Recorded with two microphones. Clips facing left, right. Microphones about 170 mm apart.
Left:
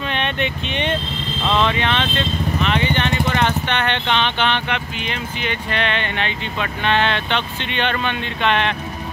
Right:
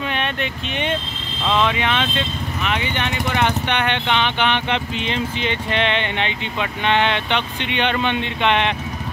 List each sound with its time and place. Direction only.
0.1 s speech: 5° right (ahead or behind)
4.6 s speech: 25° right (ahead or behind)